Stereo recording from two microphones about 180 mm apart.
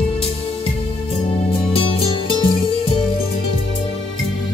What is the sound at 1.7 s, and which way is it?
Music, 30° left (ahead or behind).